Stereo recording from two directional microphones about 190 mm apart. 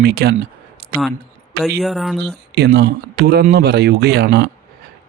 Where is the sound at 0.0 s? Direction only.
55° right (ahead or behind).